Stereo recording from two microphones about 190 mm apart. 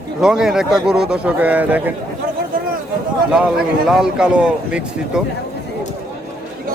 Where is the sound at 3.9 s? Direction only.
5° right (ahead or behind).